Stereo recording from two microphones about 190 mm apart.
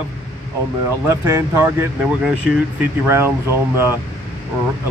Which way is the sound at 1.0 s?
15° right (ahead or behind).